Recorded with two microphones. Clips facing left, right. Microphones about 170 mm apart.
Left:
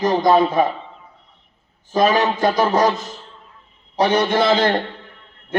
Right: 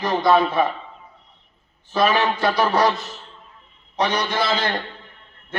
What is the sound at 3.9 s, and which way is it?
Speech, 35° left (ahead or behind).